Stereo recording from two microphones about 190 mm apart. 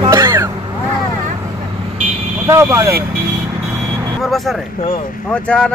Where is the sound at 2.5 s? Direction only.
15° right (ahead or behind).